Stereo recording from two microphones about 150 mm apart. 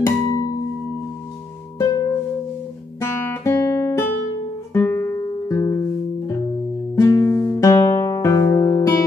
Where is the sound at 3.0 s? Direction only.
15° left (ahead or behind).